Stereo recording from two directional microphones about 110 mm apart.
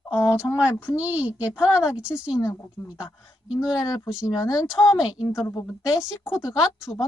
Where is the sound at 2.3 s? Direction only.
30° left (ahead or behind).